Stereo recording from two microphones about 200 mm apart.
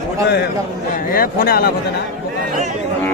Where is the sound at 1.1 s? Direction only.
45° left (ahead or behind).